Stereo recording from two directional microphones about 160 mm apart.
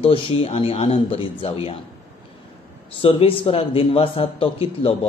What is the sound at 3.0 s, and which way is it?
Speech, 35° left (ahead or behind).